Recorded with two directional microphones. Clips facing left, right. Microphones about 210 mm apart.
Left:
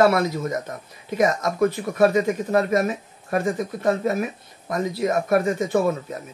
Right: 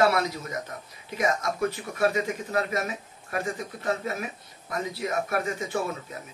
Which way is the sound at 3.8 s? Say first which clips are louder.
Left 8 dB; 45° left (ahead or behind).